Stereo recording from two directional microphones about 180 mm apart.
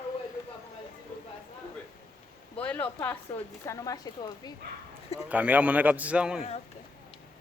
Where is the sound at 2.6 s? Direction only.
5° left (ahead or behind).